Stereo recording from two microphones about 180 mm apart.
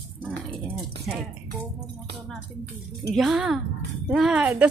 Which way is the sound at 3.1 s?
Centre (ahead or behind).